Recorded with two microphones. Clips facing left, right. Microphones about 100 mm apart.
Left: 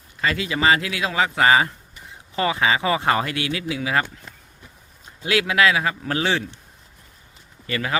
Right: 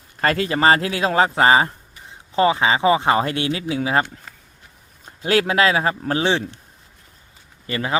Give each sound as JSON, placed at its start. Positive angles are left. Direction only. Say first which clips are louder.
{"t": 0.2, "sound": "speech", "louder": "right 4 dB", "side_deg": -50}
{"t": 5.0, "sound": "speech", "louder": "right 4 dB", "side_deg": -40}
{"t": 7.7, "sound": "speech", "louder": "right 1 dB", "side_deg": -25}